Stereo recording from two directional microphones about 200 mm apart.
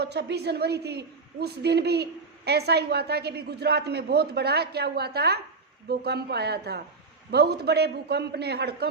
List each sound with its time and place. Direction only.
0.0 s a woman's voice: 55° right (ahead or behind)